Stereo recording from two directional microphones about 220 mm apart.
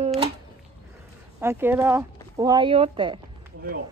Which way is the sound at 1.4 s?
10° right (ahead or behind).